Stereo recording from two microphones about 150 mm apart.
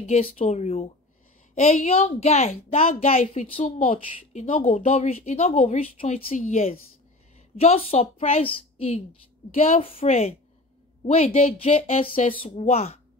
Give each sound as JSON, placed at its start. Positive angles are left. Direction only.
{"t": 0.1, "sound": "a woman's voice", "side_deg": 40}
{"t": 4.4, "sound": "a woman's voice", "side_deg": 55}
{"t": 6.2, "sound": "a woman's voice", "side_deg": 55}